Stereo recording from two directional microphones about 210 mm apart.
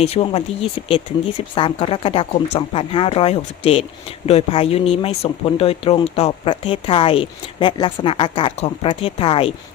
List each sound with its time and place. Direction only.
0.0 s speech: 30° left (ahead or behind)